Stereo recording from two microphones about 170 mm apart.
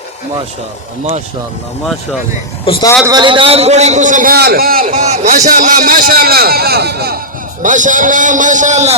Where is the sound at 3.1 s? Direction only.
25° right (ahead or behind).